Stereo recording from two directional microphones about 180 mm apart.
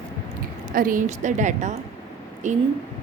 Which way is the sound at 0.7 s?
50° right (ahead or behind).